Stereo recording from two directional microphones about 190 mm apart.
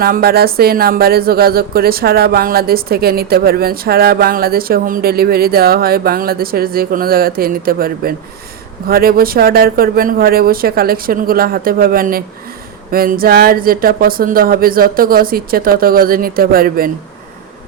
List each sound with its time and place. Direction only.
0.0 s speech: 50° right (ahead or behind)